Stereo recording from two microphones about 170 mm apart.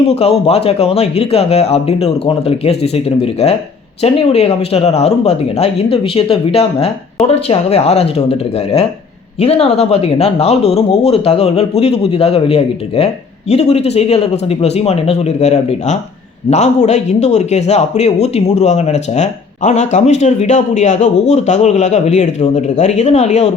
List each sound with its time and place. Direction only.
0.1 s speech: 35° left (ahead or behind)